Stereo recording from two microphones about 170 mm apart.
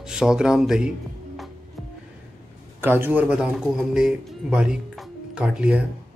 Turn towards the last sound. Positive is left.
turn(degrees=-5)  # may be behind; listen again after turning